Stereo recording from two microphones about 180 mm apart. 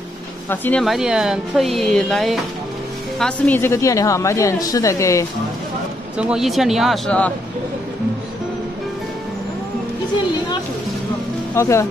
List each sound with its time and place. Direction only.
0.5 s a woman's voice: 5° left (ahead or behind)
6.1 s speech: 5° right (ahead or behind)
11.5 s a woman's voice: 15° left (ahead or behind)